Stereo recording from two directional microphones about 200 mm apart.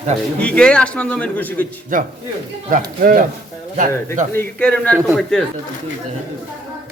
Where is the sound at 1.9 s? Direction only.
40° right (ahead or behind).